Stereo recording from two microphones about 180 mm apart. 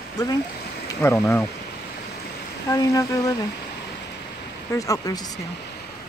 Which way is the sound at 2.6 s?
20° left (ahead or behind).